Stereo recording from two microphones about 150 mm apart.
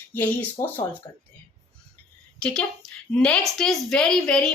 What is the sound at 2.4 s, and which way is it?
A woman's voice, 5° left (ahead or behind).